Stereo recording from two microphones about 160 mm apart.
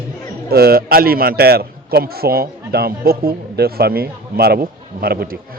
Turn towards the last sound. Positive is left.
turn(degrees=-70)  # may be behind; listen again after turning